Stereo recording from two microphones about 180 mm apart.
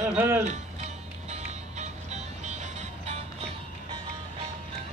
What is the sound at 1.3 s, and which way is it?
Music, 40° right (ahead or behind).